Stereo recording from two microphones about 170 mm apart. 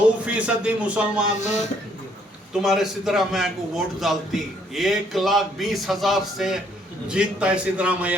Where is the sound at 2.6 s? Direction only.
Centre (ahead or behind).